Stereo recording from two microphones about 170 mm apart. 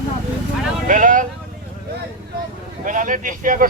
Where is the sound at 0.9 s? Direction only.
50° right (ahead or behind).